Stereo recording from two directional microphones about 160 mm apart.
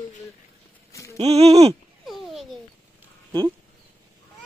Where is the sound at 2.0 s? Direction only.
Centre (ahead or behind).